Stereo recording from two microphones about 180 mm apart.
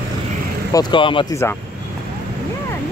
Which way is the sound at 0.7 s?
25° left (ahead or behind).